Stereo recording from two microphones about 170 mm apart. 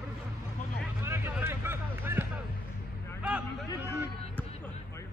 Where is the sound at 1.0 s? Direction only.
15° right (ahead or behind).